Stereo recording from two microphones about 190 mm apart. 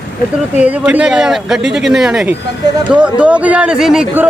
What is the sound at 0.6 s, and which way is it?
A man's voice, 5° right (ahead or behind).